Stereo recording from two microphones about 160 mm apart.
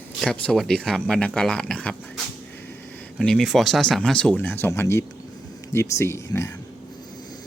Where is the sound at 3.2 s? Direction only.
5° left (ahead or behind).